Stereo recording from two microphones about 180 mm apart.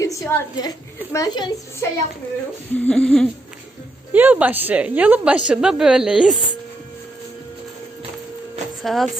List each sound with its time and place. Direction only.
0.0 s a woman's voice: 15° left (ahead or behind)
2.8 s humming: 5° left (ahead or behind)
4.1 s a woman's voice: 10° right (ahead or behind)
8.8 s humming: centre (ahead or behind)